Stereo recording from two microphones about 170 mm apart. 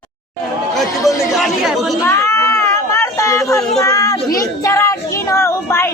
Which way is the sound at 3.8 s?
20° left (ahead or behind).